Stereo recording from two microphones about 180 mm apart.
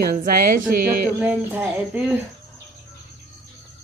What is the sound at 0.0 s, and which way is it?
Speech, 55° right (ahead or behind).